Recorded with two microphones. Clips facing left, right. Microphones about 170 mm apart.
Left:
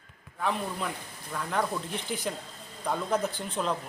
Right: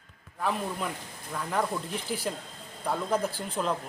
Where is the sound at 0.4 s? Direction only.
5° right (ahead or behind).